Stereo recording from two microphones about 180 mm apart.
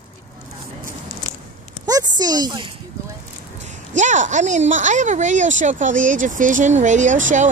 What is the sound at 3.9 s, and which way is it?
Speech, 45° right (ahead or behind).